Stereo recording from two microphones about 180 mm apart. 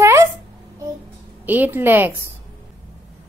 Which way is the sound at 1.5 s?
10° right (ahead or behind).